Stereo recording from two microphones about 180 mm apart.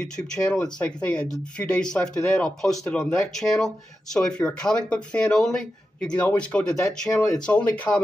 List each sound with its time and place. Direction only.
0.0 s speech: 5° left (ahead or behind)